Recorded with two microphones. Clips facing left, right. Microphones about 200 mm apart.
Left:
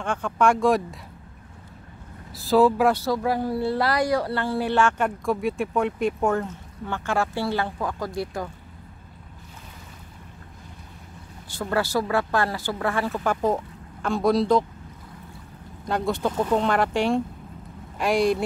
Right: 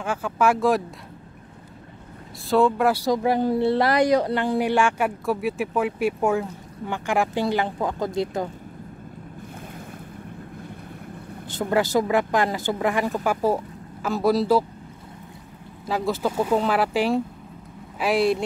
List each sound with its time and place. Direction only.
0.0 s speech: 5° right (ahead or behind)
2.4 s speech: centre (ahead or behind)
2.9 s speech: 15° right (ahead or behind)
11.5 s speech: 20° right (ahead or behind); by 14.6 s 5° right (ahead or behind)
15.8 s speech: 5° right (ahead or behind)